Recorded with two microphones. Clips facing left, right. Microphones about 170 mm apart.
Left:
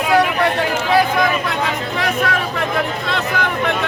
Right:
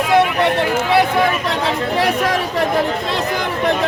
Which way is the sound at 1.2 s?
30° right (ahead or behind).